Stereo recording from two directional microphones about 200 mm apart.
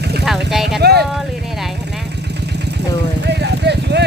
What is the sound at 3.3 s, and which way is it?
Clip-clop, 55° right (ahead or behind).